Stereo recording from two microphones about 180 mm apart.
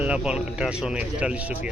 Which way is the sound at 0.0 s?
5° right (ahead or behind).